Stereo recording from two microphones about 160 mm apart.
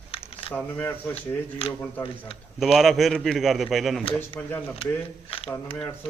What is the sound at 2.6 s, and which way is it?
A man's voice, centre (ahead or behind).